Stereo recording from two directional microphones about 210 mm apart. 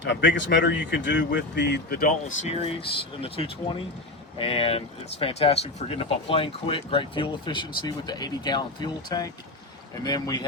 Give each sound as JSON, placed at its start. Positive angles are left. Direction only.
{"t": 0.0, "sound": "speech", "side_deg": 55}
{"t": 2.5, "sound": "speech", "side_deg": 25}